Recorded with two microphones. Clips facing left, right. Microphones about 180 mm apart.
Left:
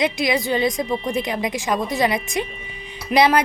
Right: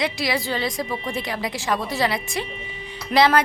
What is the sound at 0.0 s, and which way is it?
A woman's voice, 20° left (ahead or behind).